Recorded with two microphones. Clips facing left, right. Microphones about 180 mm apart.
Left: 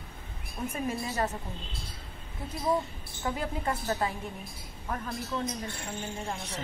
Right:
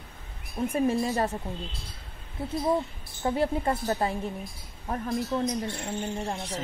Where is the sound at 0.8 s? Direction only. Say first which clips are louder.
Right 4 dB; 30° right (ahead or behind).